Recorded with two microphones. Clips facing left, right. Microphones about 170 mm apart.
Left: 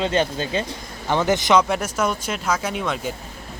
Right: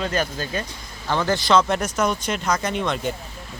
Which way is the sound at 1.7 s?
5° left (ahead or behind).